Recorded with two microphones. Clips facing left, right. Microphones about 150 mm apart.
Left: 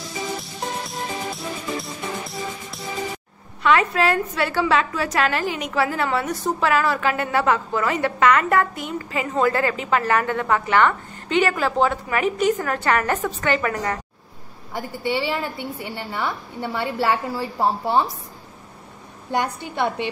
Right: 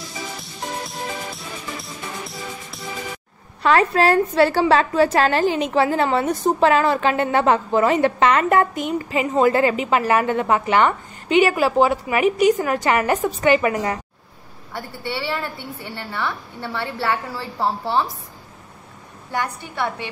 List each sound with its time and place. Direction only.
0.4 s music: centre (ahead or behind)
3.6 s a woman's voice: 35° right (ahead or behind); by 13.9 s 15° right (ahead or behind)
14.7 s a woman's voice: 15° left (ahead or behind)
19.3 s a woman's voice: 20° left (ahead or behind)